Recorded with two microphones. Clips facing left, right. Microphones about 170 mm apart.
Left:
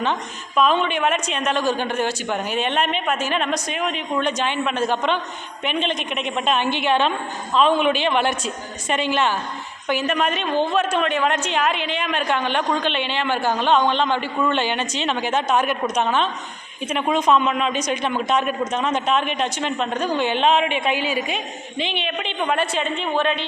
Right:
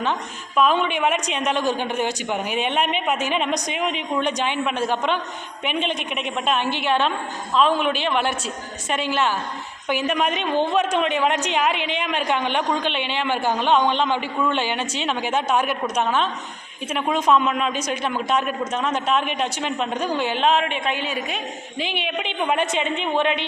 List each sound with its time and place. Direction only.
0.0 s a woman's voice: 5° right (ahead or behind); by 23.4 s 20° right (ahead or behind)